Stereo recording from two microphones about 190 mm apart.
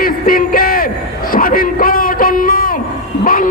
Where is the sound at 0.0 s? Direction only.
50° left (ahead or behind).